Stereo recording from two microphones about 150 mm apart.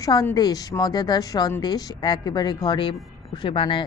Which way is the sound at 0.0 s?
25° left (ahead or behind).